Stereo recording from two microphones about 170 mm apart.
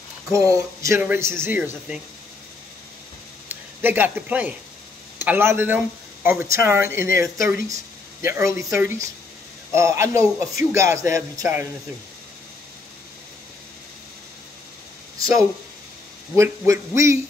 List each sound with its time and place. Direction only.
0.3 s speech: 20° right (ahead or behind)
3.4 s speech: 10° right (ahead or behind)
16.3 s speech: 15° right (ahead or behind)